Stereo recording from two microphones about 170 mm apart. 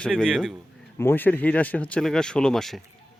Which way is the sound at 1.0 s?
10° left (ahead or behind).